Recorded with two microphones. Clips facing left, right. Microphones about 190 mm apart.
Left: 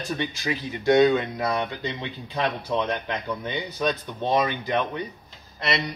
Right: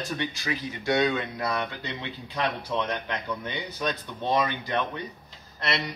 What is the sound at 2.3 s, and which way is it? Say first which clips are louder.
A man's voice: left 3 dB; 10° left (ahead or behind).